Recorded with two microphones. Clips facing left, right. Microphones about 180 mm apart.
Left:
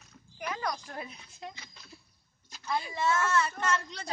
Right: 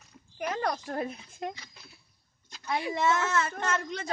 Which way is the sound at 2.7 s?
65° right (ahead or behind).